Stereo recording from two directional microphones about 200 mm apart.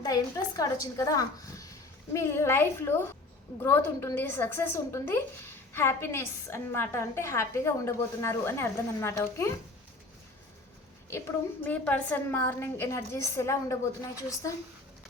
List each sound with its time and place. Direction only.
0.0 s a woman's voice: 20° left (ahead or behind)
11.1 s a woman's voice: 10° left (ahead or behind)